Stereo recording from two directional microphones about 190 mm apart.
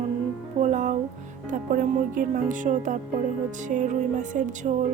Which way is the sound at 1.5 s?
45° right (ahead or behind).